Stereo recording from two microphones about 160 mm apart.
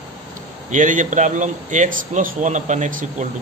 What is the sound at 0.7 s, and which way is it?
A man's voice, 50° right (ahead or behind).